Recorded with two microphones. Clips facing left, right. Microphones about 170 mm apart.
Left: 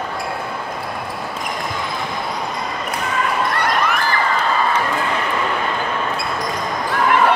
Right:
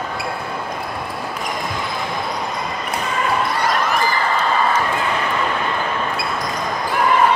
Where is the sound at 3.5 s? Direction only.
65° left (ahead or behind).